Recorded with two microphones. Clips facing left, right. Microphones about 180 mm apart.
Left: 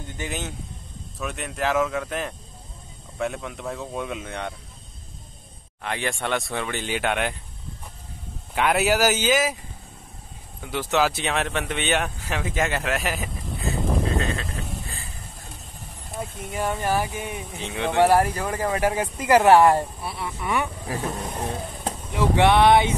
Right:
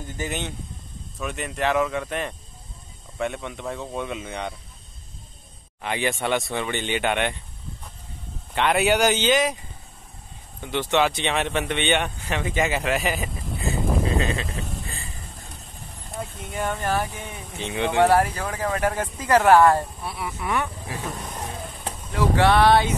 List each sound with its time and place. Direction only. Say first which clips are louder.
0.2 s speech: right 2 dB; centre (ahead or behind)
5.8 s speech: right 2 dB; centre (ahead or behind)
8.5 s speech: right 1 dB; 5° left (ahead or behind)
16.2 s speech: left 1 dB; centre (ahead or behind); by 19.9 s 15° left (ahead or behind)
20.0 s speech: even; centre (ahead or behind)
22.1 s speech: left 1 dB; 20° left (ahead or behind)